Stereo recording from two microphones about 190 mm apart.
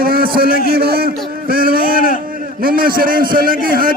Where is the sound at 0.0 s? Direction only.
50° right (ahead or behind).